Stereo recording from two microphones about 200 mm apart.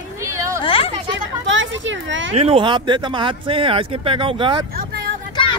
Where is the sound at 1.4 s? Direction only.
70° right (ahead or behind).